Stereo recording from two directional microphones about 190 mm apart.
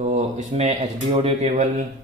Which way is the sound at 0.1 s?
40° right (ahead or behind).